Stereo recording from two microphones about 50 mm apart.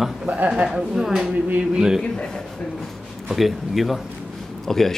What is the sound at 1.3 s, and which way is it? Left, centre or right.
Speech, right.